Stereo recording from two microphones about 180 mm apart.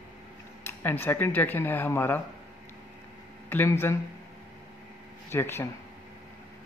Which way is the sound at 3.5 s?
15° left (ahead or behind).